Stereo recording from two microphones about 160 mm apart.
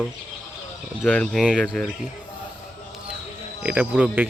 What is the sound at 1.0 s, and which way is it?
Speech, 5° left (ahead or behind).